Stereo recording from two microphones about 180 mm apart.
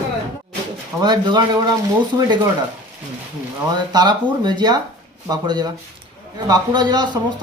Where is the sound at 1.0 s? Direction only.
25° right (ahead or behind).